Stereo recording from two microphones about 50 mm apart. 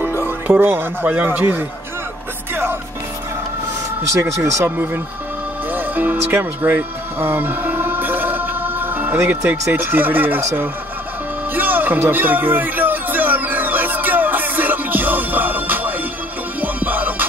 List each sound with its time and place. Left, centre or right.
0.2 s speech: right
2.5 s music: right
4.2 s speech: right
4.6 s speech: right
5.7 s music: right
9.5 s speech: right
12.0 s music: right